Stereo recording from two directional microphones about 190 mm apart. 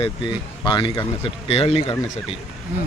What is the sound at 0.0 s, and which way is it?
Speech, 25° left (ahead or behind).